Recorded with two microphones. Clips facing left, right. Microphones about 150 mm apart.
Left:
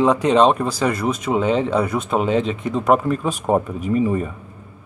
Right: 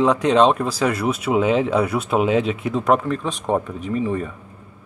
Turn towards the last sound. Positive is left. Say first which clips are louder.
# left 3 dB
turn(degrees=5)  # may be behind; listen again after turning